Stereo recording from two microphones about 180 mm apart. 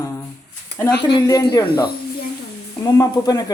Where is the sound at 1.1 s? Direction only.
20° left (ahead or behind).